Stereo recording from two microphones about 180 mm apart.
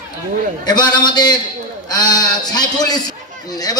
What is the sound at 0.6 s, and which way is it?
A man's voice, 25° left (ahead or behind).